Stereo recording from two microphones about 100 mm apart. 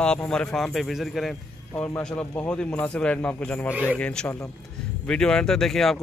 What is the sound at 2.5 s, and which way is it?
Speech, 15° left (ahead or behind).